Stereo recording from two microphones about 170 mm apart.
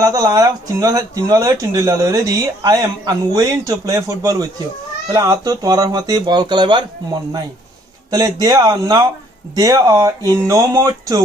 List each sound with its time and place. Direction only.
0.0 s speech: 20° right (ahead or behind)
8.1 s speech: 20° right (ahead or behind)